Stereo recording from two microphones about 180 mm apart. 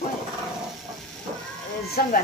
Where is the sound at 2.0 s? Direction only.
55° left (ahead or behind).